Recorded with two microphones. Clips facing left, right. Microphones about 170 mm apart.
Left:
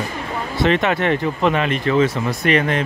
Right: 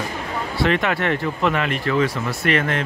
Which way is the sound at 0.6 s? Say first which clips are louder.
Left 3 dB; 25° left (ahead or behind).